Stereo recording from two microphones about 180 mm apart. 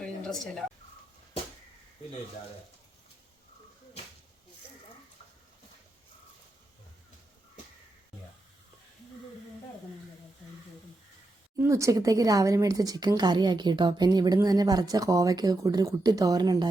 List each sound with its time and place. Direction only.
11.6 s speech: 15° right (ahead or behind)